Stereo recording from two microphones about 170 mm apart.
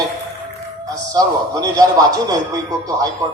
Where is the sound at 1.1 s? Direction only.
20° right (ahead or behind).